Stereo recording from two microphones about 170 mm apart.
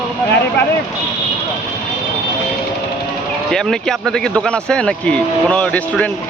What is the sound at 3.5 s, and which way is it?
Speech, 5° left (ahead or behind).